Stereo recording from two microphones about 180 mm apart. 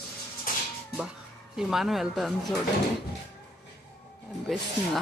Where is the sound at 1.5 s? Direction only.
Centre (ahead or behind).